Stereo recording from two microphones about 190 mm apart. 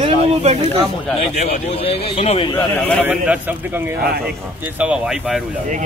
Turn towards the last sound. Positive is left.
turn(degrees=-5)  # may be behind; listen again after turning